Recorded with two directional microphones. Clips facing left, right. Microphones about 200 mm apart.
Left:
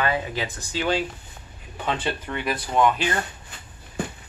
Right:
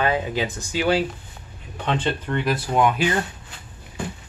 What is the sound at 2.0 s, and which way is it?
Speech, 10° left (ahead or behind).